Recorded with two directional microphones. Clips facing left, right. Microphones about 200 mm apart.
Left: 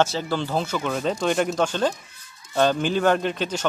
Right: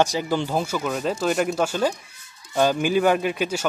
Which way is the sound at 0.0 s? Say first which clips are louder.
Right 1 dB; 15° right (ahead or behind).